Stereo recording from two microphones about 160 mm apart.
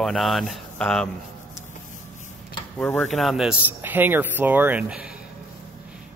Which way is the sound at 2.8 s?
10° left (ahead or behind).